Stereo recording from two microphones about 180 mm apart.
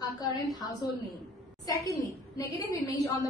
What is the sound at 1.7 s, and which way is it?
A woman's voice, 20° left (ahead or behind).